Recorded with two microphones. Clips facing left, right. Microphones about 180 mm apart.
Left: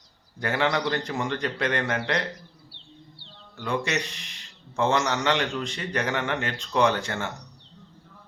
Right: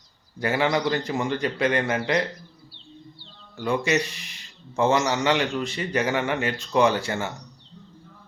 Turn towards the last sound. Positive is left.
turn(degrees=-5)  # may be behind; listen again after turning